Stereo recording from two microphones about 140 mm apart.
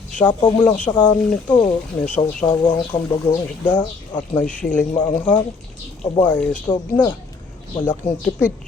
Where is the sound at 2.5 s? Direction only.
35° left (ahead or behind).